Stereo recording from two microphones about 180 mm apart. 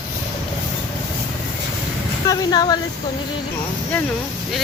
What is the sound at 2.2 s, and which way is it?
Speech, 20° left (ahead or behind).